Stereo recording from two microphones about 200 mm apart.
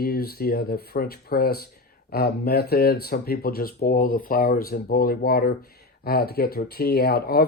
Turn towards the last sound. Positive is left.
turn(degrees=50)  # may be behind; listen again after turning